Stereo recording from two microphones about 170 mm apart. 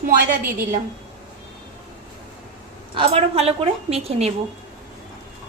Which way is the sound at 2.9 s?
35° right (ahead or behind).